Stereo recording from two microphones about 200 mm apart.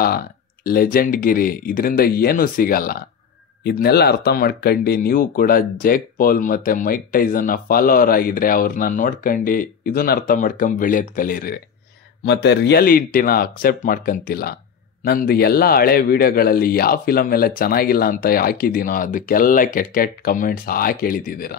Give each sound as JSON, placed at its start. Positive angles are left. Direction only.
{"t": 0.7, "sound": "speech", "side_deg": 45}
{"t": 12.3, "sound": "speech", "side_deg": 55}